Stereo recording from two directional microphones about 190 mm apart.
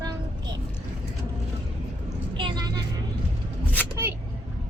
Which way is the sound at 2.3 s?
25° right (ahead or behind).